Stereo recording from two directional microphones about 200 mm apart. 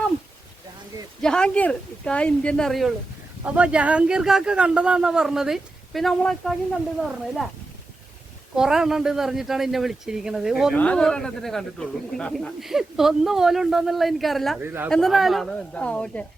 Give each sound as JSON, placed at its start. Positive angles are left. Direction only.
{"t": 1.2, "sound": "speech", "side_deg": 5}
{"t": 8.5, "sound": "speech", "side_deg": -5}
{"t": 14.6, "sound": "speech", "side_deg": -10}
{"t": 14.8, "sound": "speech", "side_deg": 0}